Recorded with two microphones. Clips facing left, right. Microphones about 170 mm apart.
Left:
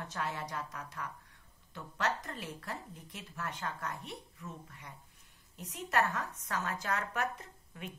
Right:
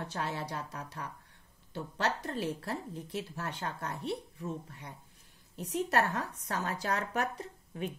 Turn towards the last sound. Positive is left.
turn(degrees=-35)  # may be behind; listen again after turning